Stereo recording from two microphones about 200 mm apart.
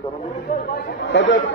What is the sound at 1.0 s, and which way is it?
Speech, 65° left (ahead or behind).